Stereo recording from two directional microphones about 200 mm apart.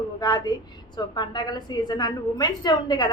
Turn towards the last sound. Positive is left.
turn(degrees=20)  # may be behind; listen again after turning